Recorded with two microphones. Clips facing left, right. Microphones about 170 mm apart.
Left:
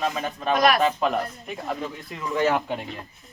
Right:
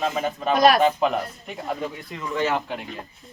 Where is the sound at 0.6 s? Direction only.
35° right (ahead or behind).